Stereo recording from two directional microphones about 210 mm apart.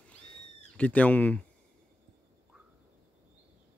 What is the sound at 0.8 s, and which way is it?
Speech, 5° left (ahead or behind).